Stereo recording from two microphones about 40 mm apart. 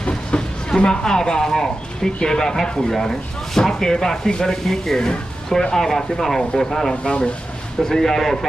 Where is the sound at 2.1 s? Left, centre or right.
Centre.